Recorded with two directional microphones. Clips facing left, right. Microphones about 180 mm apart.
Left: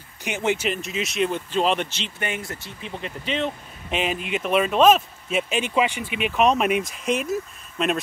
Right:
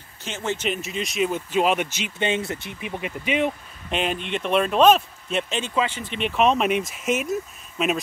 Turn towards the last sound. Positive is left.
turn(degrees=-5)  # may be behind; listen again after turning